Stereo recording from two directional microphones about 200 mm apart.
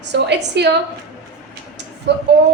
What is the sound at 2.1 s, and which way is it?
Speech, 60° right (ahead or behind).